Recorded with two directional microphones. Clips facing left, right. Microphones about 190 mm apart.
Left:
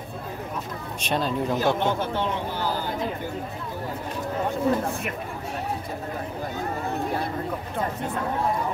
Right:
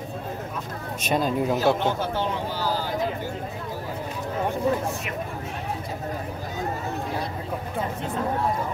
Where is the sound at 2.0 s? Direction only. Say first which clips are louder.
Even; 60° left (ahead or behind).